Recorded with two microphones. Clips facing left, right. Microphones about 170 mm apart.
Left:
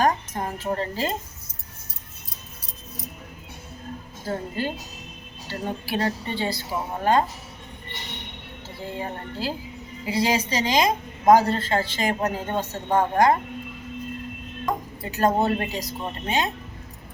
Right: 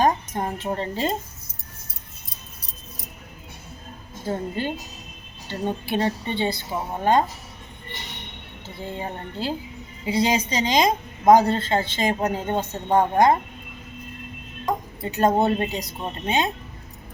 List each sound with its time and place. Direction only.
0.0 s speech: 20° right (ahead or behind)
4.3 s a woman's voice: 20° right (ahead or behind)
8.6 s a woman's voice: 20° right (ahead or behind)
15.0 s a woman's voice: 25° right (ahead or behind)